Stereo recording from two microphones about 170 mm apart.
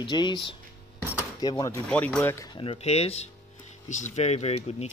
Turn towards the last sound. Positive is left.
turn(degrees=40)  # may be behind; listen again after turning